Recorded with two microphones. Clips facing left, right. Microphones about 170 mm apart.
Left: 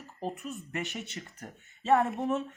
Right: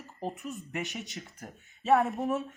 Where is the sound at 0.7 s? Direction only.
20° right (ahead or behind).